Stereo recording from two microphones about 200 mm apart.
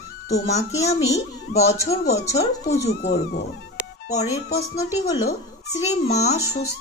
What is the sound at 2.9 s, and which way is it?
Speech, 55° left (ahead or behind).